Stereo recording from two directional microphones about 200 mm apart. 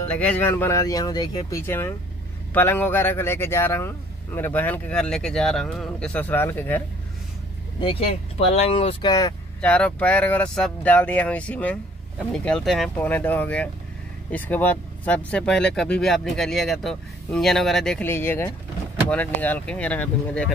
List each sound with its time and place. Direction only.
0.2 s speech: 5° left (ahead or behind)
7.8 s speech: 30° left (ahead or behind)
9.6 s speech: 5° left (ahead or behind)